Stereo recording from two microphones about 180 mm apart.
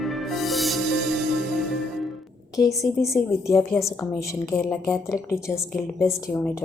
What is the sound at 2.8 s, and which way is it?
A woman's voice, 15° left (ahead or behind).